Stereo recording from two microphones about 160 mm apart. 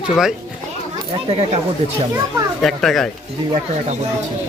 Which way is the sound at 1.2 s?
40° right (ahead or behind).